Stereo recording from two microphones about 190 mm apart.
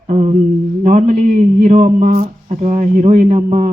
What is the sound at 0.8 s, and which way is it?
A man's voice, 40° right (ahead or behind).